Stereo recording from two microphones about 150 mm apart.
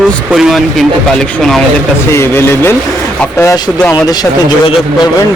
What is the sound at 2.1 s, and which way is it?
Speech, 15° left (ahead or behind).